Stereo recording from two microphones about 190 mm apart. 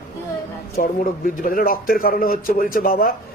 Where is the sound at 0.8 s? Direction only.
45° left (ahead or behind).